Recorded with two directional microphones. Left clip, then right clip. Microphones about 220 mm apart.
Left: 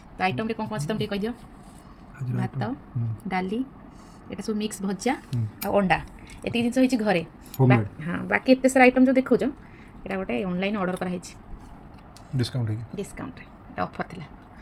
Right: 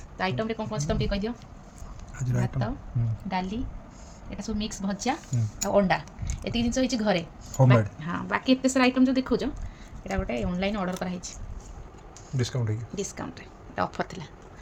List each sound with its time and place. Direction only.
0.2 s a woman's voice: 10° left (ahead or behind)
2.4 s a woman's voice: 20° left (ahead or behind)
12.4 s speech: 20° right (ahead or behind)
13.7 s speech: 15° right (ahead or behind)